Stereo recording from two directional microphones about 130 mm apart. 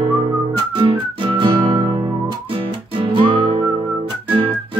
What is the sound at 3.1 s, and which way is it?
Music, 35° right (ahead or behind).